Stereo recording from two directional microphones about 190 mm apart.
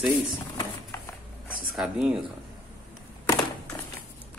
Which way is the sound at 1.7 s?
Centre (ahead or behind).